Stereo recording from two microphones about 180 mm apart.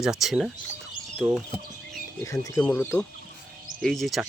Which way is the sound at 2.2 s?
15° left (ahead or behind).